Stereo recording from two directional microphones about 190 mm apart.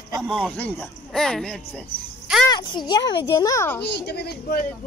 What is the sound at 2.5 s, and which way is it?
A child's voice, 25° left (ahead or behind).